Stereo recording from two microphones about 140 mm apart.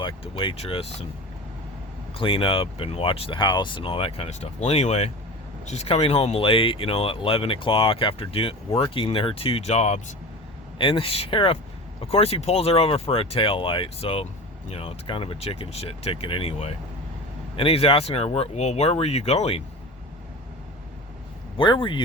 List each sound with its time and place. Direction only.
0.0 s speech: 35° left (ahead or behind)
2.1 s speech: 40° left (ahead or behind)
10.8 s speech: 40° left (ahead or behind)
21.6 s speech: 35° left (ahead or behind)